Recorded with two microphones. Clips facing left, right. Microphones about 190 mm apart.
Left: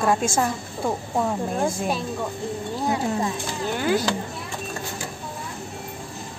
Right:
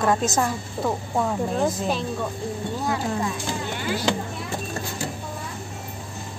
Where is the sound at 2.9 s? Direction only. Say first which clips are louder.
Left 2 dB; 25° left (ahead or behind).